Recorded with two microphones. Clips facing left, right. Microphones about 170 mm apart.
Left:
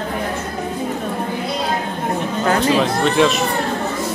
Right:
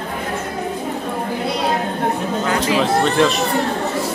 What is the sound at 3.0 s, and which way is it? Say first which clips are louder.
Speech: left 1 dB; centre (ahead or behind).